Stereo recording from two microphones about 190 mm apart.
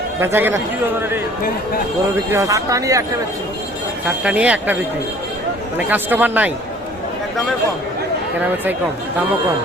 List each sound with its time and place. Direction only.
0.2 s speech: 10° right (ahead or behind)
2.3 s speech: 15° right (ahead or behind)
4.0 s speech: 5° right (ahead or behind)